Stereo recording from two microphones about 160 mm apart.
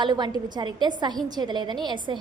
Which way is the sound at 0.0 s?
25° right (ahead or behind).